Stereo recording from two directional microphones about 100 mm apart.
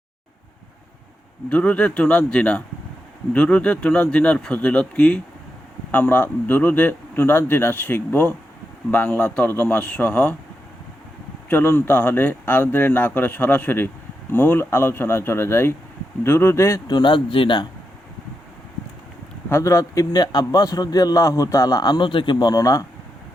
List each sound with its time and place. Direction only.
1.5 s speech: 15° left (ahead or behind)
11.4 s speech: 20° left (ahead or behind)
16.8 s speech: 50° left (ahead or behind)
19.5 s a man's voice: 25° left (ahead or behind)